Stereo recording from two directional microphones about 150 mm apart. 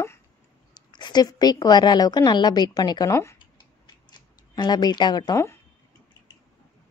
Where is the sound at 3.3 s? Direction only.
30° left (ahead or behind).